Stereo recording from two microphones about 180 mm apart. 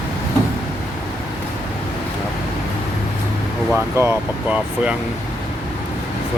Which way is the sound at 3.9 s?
10° right (ahead or behind).